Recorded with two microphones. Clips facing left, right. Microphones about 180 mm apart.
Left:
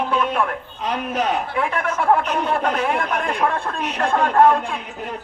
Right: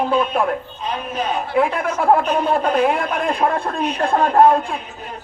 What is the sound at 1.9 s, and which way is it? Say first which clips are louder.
Speech: right 2 dB; 35° right (ahead or behind).